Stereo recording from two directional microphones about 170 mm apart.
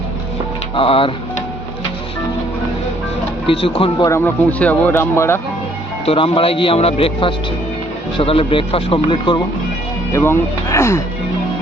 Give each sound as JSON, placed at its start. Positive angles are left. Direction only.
{"t": 0.8, "sound": "speech", "side_deg": 30}
{"t": 3.4, "sound": "speech", "side_deg": 35}
{"t": 4.1, "sound": "speech", "side_deg": 10}
{"t": 6.1, "sound": "speech", "side_deg": 35}
{"t": 10.1, "sound": "speech", "side_deg": 15}